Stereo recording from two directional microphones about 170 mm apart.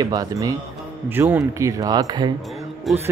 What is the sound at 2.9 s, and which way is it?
Music, centre (ahead or behind).